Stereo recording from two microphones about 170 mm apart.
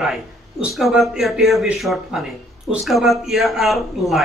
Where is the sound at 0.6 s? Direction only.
Centre (ahead or behind).